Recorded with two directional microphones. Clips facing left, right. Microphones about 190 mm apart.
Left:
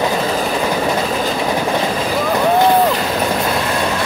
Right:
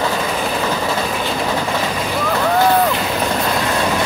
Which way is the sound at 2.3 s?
15° left (ahead or behind).